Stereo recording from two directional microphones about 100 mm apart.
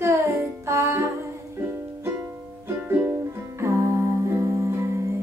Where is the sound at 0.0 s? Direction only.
30° right (ahead or behind).